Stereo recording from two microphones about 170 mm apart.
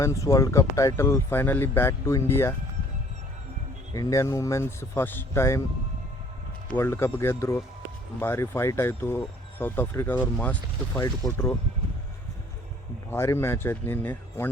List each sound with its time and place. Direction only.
0.0 s speech: 20° left (ahead or behind)
3.9 s speech: 20° left (ahead or behind)
6.7 s speech: 15° left (ahead or behind)
10.9 s speech: 20° left (ahead or behind)
13.1 s speech: 15° left (ahead or behind)